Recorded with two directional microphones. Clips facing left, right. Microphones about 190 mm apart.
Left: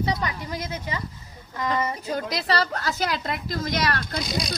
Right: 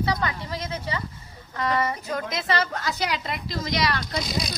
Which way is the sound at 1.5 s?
25° left (ahead or behind).